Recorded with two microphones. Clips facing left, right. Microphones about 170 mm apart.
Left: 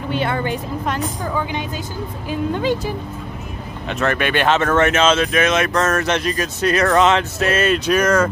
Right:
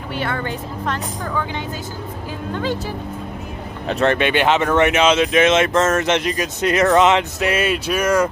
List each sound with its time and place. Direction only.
0.1 s a woman's voice: 20° left (ahead or behind)
3.8 s speech: 30° right (ahead or behind)
4.3 s speech: 15° right (ahead or behind)